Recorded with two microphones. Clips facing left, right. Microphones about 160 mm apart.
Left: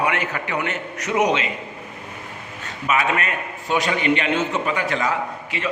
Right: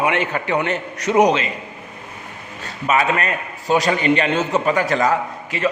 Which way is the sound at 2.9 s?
35° right (ahead or behind).